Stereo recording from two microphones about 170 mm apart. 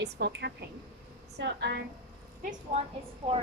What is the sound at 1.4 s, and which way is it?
Speech, 90° right.